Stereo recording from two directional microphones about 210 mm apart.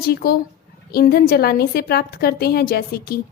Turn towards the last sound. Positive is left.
turn(degrees=45)  # may be behind; listen again after turning